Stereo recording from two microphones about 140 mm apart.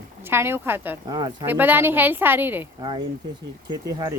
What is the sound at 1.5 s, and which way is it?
A woman's voice, 15° right (ahead or behind).